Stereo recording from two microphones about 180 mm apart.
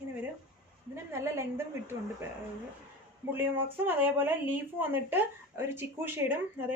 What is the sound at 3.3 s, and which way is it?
A woman's voice, 10° right (ahead or behind).